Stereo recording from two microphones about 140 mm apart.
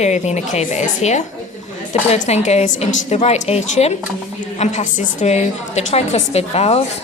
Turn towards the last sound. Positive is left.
turn(degrees=50)  # may be behind; listen again after turning